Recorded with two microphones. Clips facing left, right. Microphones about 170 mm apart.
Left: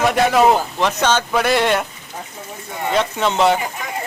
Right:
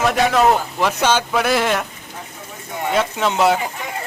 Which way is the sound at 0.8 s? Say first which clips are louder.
Even; 10° right (ahead or behind).